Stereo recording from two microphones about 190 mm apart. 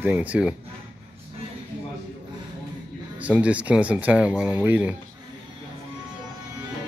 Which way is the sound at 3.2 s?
5° right (ahead or behind).